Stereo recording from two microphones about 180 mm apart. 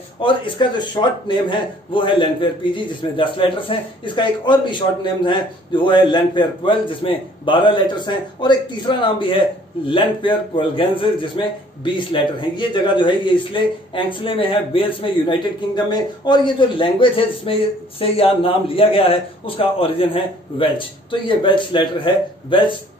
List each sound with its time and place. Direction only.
0.2 s a man's voice: 25° left (ahead or behind)